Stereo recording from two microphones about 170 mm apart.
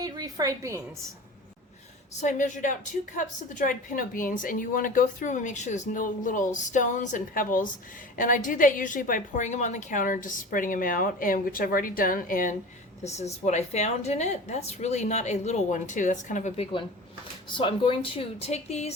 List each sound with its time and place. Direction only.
0.0 s a woman's voice: 20° right (ahead or behind)
2.2 s a woman's voice: 50° left (ahead or behind)
13.0 s a woman's voice: 40° left (ahead or behind)
17.5 s speech: 30° left (ahead or behind)